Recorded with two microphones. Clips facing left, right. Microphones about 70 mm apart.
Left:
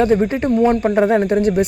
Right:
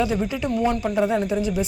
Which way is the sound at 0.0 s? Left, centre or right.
Left.